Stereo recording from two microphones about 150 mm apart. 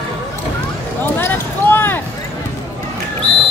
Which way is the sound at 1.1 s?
15° left (ahead or behind).